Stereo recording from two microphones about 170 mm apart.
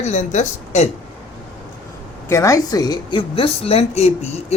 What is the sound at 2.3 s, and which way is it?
Speech, 20° left (ahead or behind).